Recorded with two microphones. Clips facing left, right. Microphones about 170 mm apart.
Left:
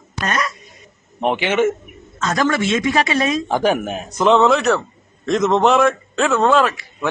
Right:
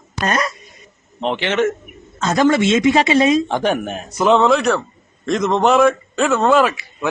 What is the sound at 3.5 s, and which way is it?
A man's voice, 5° left (ahead or behind).